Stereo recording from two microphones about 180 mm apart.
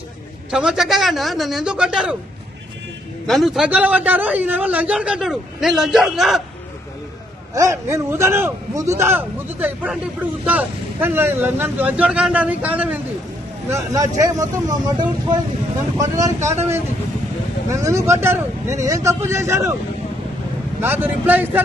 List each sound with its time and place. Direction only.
0.5 s a man's voice: 5° right (ahead or behind)
3.3 s a man's voice: centre (ahead or behind)
7.5 s speech: 15° right (ahead or behind)
17.6 s speech: 15° right (ahead or behind)
20.8 s speech: 10° right (ahead or behind)